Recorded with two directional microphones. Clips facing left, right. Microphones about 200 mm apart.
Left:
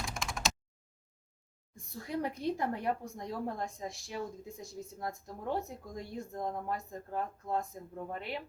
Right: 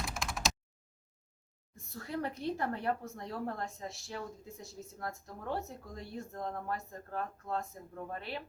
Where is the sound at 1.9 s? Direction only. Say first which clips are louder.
Left 2 dB; 15° left (ahead or behind).